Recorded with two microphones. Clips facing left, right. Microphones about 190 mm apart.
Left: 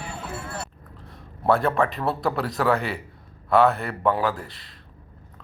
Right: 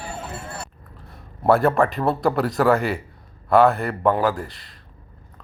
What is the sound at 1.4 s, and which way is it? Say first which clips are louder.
Speech: right 4 dB; 5° right (ahead or behind).